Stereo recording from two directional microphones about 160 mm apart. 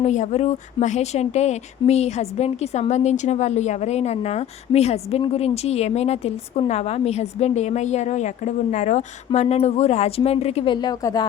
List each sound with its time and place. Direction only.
0.0 s a woman's voice: 45° left (ahead or behind); by 11.3 s 25° left (ahead or behind)